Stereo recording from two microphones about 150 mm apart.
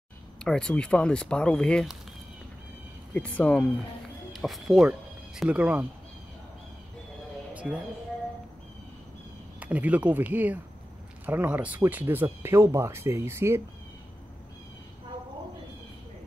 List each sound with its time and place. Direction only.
0.4 s speech: 5° left (ahead or behind)
3.2 s speech: 10° left (ahead or behind); by 5.9 s 10° right (ahead or behind)
7.5 s a sound: 10° right (ahead or behind)
9.6 s speech: 10° right (ahead or behind)